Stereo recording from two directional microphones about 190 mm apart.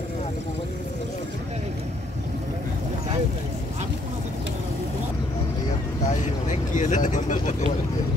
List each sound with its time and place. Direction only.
6.2 s vehicle: 40° left (ahead or behind)